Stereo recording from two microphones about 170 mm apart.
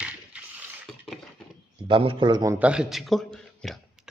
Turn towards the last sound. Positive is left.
turn(degrees=0)  # may be behind; listen again after turning